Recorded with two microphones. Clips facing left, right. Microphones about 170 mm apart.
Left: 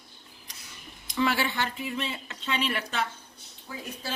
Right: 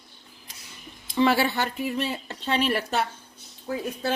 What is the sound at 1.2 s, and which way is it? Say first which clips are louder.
Speech: right 5 dB; 35° right (ahead or behind).